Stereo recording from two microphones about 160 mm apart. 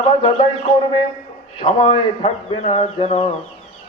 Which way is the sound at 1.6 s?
40° left (ahead or behind).